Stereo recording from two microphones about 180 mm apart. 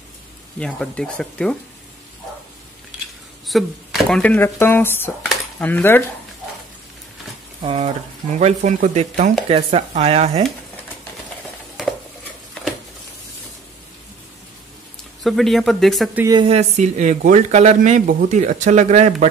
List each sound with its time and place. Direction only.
0.6 s speech: 5° left (ahead or behind)
3.4 s speech: centre (ahead or behind)
7.6 s speech: 35° right (ahead or behind)
15.2 s speech: centre (ahead or behind)
16.3 s speech: 30° right (ahead or behind)